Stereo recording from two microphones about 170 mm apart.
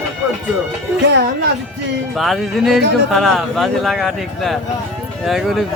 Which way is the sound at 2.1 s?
Centre (ahead or behind).